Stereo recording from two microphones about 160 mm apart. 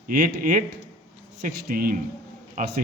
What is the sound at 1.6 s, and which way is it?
A man's voice, 65° right (ahead or behind).